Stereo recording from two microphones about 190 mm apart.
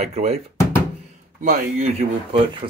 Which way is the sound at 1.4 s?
40° right (ahead or behind).